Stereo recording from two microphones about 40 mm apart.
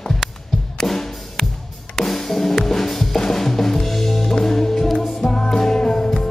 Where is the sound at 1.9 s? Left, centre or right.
Centre.